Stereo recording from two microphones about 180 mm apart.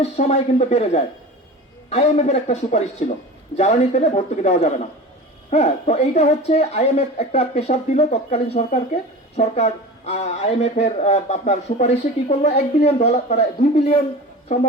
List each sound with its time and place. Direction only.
0.0 s speech: 35° left (ahead or behind)